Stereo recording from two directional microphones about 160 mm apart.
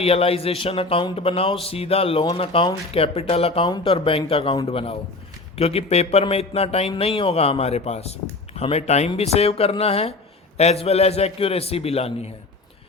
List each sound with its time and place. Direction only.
0.0 s music: 40° left (ahead or behind)